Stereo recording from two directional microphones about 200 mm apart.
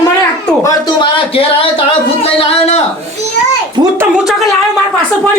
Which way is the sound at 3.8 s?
20° right (ahead or behind).